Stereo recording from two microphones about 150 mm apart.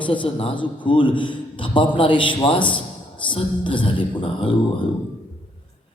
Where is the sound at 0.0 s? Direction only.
35° left (ahead or behind).